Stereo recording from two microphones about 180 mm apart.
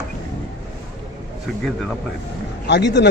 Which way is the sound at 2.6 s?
70° left (ahead or behind).